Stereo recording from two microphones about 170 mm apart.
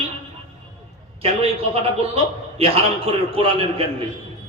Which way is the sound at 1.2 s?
35° right (ahead or behind).